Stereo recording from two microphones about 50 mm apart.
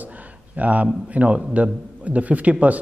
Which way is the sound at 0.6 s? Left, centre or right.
Right.